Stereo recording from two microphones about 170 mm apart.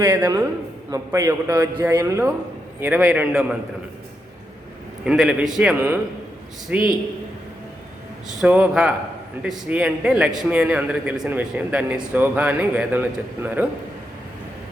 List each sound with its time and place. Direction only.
0.0 s a man's voice: 15° right (ahead or behind)
5.0 s a man's voice: 5° right (ahead or behind)
8.4 s a man's voice: 10° right (ahead or behind)